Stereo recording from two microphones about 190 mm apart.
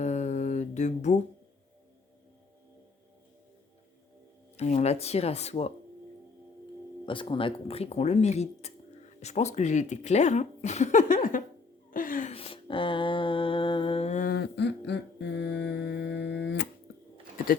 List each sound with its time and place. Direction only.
0.0 s mantra: 35° left (ahead or behind)
4.5 s speech: 35° left (ahead or behind)
7.0 s speech: 25° left (ahead or behind); by 11.4 s 45° left (ahead or behind)
11.9 s gasp: 45° left (ahead or behind)
12.3 s a sound: 30° left (ahead or behind); by 15.6 s 65° left (ahead or behind)
15.7 s music: 65° left (ahead or behind)